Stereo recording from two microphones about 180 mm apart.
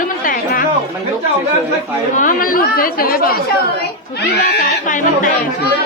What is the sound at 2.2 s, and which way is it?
A woman's voice, 50° left (ahead or behind).